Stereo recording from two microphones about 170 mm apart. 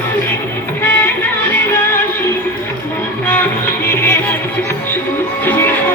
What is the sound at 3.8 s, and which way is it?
Music, 15° left (ahead or behind).